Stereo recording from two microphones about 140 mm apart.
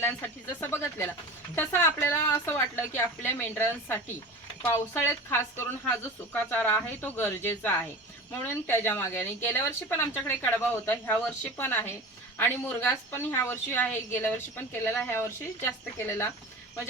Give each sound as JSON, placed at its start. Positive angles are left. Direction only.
{"t": 0.6, "sound": "a woman's voice", "side_deg": 15}